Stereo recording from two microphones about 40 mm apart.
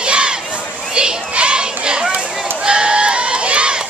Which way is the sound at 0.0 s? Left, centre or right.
Right.